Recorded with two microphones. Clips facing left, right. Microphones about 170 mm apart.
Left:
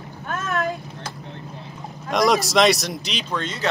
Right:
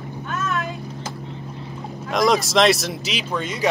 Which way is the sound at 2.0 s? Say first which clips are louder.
Even; centre (ahead or behind).